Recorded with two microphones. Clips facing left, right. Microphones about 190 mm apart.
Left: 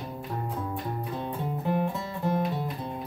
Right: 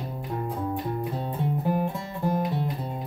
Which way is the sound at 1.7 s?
10° right (ahead or behind).